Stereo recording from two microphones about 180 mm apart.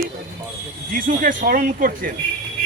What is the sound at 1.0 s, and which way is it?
Speech, 50° right (ahead or behind).